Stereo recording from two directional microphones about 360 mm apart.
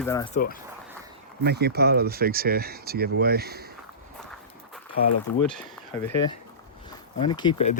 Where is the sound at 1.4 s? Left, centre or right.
Right.